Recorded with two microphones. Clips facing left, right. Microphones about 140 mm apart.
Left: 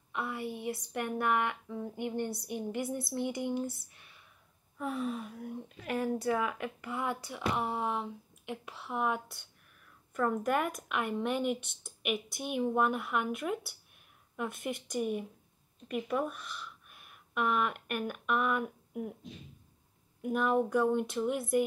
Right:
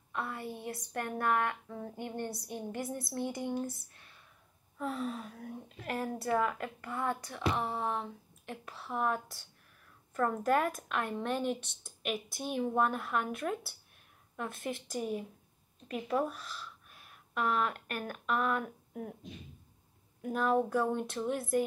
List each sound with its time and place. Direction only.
0.1 s a woman's voice: 5° left (ahead or behind)
4.7 s a woman's voice: 5° left (ahead or behind)
20.2 s a woman's voice: 5° left (ahead or behind)